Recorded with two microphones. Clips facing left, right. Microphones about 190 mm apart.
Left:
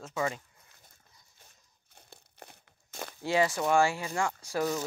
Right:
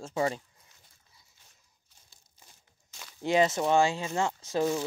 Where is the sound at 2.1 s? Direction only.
65° left (ahead or behind).